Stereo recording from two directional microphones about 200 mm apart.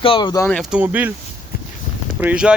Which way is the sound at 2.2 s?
5° right (ahead or behind).